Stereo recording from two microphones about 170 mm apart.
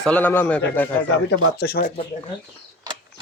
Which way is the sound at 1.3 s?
70° left (ahead or behind).